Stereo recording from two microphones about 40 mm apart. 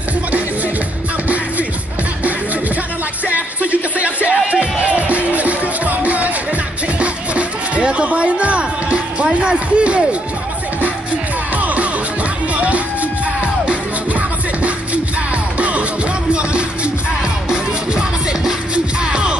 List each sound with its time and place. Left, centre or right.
4.0 s music: right
11.5 s music: right
17.5 s music: centre